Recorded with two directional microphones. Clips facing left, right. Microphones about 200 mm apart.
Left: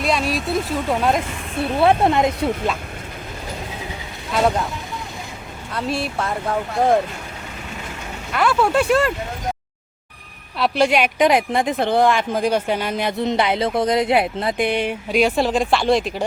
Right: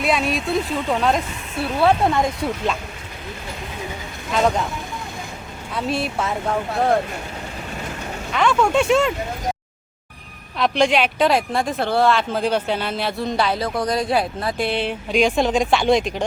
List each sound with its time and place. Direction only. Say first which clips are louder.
0.0 s speech: even; centre (ahead or behind)
1.8 s speech: left 2 dB; 20° left (ahead or behind)
4.4 s speech: even; 5° left (ahead or behind)
5.7 s speech: even; centre (ahead or behind)
8.3 s speech: even; 5° left (ahead or behind)
10.6 s speech: even; 5° left (ahead or behind)